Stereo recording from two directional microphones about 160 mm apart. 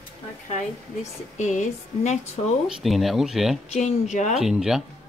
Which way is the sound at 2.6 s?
Centre (ahead or behind).